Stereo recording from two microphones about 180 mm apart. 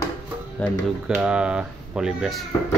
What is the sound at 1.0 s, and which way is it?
Speech, 5° right (ahead or behind).